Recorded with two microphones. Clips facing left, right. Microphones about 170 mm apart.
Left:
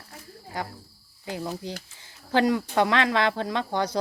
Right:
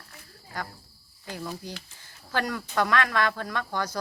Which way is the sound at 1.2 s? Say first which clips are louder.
Left 4 dB; 20° left (ahead or behind).